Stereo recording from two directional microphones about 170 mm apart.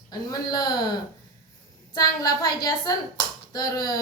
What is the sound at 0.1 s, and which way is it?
Speech, 25° left (ahead or behind).